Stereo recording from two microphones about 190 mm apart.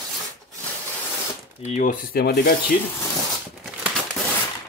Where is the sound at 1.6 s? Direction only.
40° left (ahead or behind); by 2.5 s 55° left (ahead or behind).